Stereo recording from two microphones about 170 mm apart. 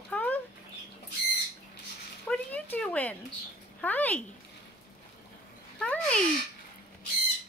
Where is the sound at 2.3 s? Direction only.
10° left (ahead or behind).